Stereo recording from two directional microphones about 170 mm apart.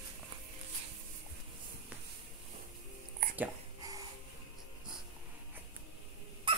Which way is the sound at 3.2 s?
55° right (ahead or behind).